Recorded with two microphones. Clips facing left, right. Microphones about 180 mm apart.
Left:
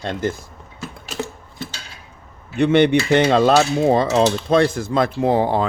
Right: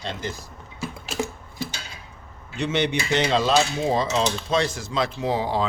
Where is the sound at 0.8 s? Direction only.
10° right (ahead or behind).